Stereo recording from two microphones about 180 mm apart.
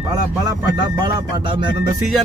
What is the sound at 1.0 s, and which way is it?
Speech, 25° right (ahead or behind).